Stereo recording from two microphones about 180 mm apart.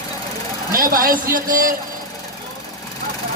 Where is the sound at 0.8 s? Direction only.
55° right (ahead or behind).